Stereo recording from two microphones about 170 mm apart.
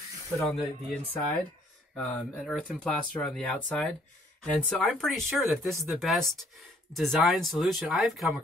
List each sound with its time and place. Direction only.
0.4 s speech: centre (ahead or behind)
2.0 s speech: centre (ahead or behind)